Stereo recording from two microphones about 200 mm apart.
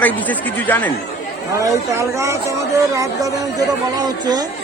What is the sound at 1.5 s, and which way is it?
Speech, 15° right (ahead or behind).